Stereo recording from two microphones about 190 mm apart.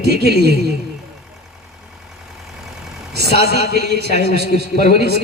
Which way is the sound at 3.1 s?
60° right (ahead or behind).